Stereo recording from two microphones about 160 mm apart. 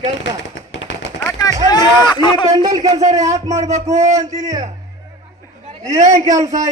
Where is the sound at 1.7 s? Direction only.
25° left (ahead or behind).